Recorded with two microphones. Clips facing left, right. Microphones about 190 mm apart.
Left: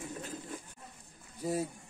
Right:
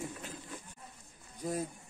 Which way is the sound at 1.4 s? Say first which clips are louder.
Left 2 dB; 5° left (ahead or behind).